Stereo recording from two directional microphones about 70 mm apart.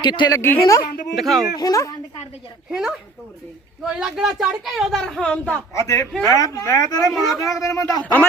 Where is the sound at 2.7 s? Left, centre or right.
Centre.